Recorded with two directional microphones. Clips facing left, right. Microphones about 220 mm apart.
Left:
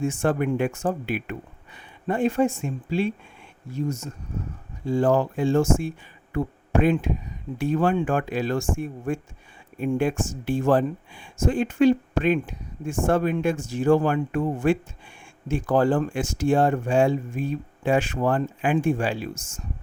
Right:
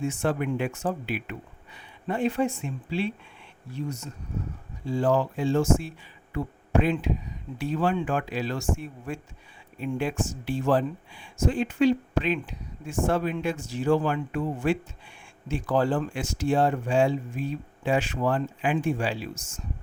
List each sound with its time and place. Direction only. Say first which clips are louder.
0.0 s speech: left 4 dB; 50° left (ahead or behind)